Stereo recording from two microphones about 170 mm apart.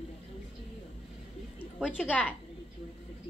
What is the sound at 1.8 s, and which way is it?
Speech, 10° left (ahead or behind).